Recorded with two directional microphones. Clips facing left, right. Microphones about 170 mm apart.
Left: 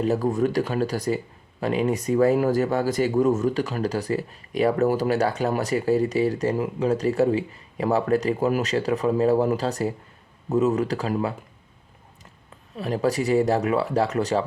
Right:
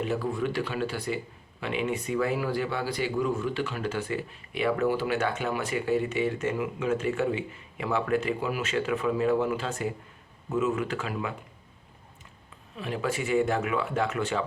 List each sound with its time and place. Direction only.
0.0 s speech: 40° left (ahead or behind)
12.7 s speech: 40° left (ahead or behind)